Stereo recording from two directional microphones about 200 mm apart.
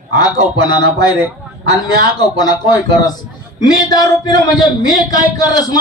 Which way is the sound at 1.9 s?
20° left (ahead or behind).